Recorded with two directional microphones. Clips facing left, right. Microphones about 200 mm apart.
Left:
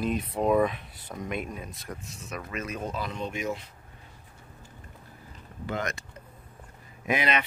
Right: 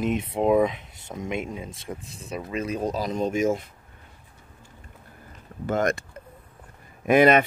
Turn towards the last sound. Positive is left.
turn(degrees=-50)  # may be behind; listen again after turning